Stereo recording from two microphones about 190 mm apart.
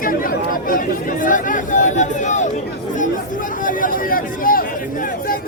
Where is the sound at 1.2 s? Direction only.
45° left (ahead or behind).